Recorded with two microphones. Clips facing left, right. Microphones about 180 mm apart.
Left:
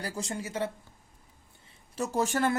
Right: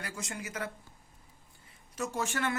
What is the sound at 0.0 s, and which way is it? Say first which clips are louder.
Speech: left 5 dB; 30° left (ahead or behind).